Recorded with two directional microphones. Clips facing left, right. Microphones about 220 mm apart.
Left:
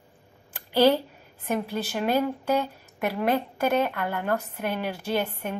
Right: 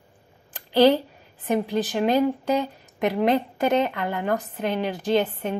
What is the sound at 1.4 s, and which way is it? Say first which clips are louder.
A woman's voice: right 5 dB; 15° right (ahead or behind).